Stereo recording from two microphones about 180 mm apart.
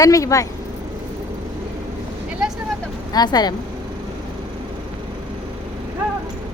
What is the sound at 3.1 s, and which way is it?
Speech, 20° left (ahead or behind).